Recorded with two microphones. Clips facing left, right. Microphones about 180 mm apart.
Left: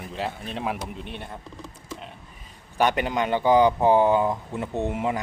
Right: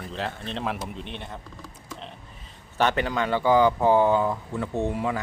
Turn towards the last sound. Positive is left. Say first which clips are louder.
# even
turn(degrees=20)  # may be behind; listen again after turning